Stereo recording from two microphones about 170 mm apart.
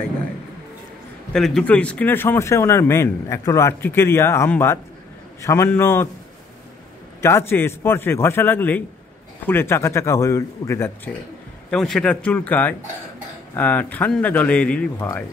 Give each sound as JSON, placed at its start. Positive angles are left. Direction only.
{"t": 1.3, "sound": "speech", "side_deg": 5}
{"t": 7.2, "sound": "speech", "side_deg": 15}
{"t": 11.7, "sound": "speech", "side_deg": 5}